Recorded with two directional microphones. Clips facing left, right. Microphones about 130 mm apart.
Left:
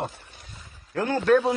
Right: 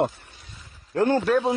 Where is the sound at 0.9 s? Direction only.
30° right (ahead or behind).